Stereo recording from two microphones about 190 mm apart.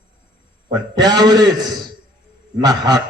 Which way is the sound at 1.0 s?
20° right (ahead or behind).